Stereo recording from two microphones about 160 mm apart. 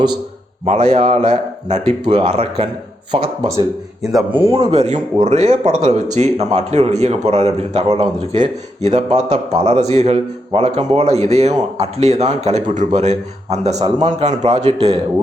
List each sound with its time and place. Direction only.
0.6 s speech: 40° right (ahead or behind)
4.3 s speech: 10° right (ahead or behind)
4.5 s a man's voice: 45° right (ahead or behind)